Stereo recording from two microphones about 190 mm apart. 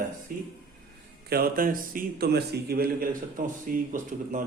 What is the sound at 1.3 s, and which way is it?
A man's voice, 50° right (ahead or behind).